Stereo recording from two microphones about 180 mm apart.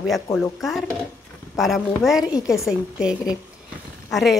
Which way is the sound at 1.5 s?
Centre (ahead or behind).